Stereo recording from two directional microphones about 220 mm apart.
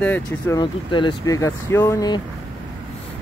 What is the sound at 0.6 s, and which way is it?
Speech, 20° left (ahead or behind).